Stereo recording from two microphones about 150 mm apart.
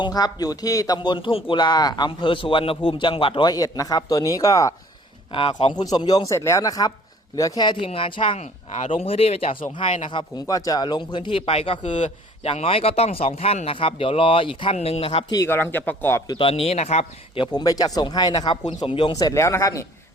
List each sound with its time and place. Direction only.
0.0 s speech: 25° left (ahead or behind)
5.3 s a man's voice: 35° left (ahead or behind)
15.3 s speech: 20° left (ahead or behind)
16.2 s a man's voice: 30° left (ahead or behind)
17.4 s speech: 25° left (ahead or behind)